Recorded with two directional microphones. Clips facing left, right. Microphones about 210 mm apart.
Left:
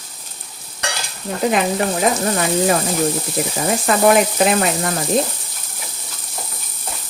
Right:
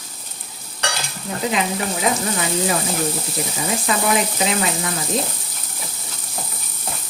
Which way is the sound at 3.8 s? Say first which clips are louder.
Left 7 dB; 55° left (ahead or behind).